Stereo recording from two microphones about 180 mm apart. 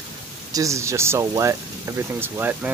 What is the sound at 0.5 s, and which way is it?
Speech, 20° right (ahead or behind).